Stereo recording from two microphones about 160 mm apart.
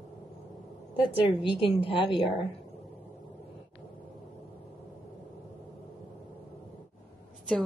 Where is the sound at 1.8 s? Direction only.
30° left (ahead or behind).